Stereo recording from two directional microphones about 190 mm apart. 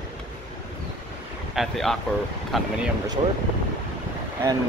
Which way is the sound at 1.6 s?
Centre (ahead or behind).